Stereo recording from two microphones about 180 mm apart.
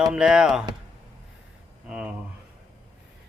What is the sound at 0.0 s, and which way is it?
Speech, 5° right (ahead or behind).